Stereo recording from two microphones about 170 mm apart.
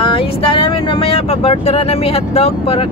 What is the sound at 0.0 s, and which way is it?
Vehicle, 30° left (ahead or behind).